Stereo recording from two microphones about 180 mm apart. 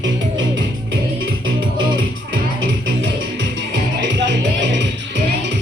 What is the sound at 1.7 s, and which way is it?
Music, 90° right.